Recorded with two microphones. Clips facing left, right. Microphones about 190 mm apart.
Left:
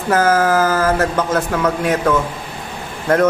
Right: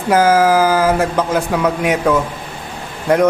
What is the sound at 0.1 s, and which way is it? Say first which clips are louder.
A man's voice: right 3 dB; 10° right (ahead or behind).